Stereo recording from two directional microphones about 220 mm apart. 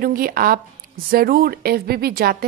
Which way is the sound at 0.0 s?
40° right (ahead or behind).